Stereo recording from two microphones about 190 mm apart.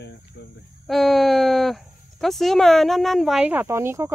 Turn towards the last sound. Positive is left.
turn(degrees=-15)  # may be behind; listen again after turning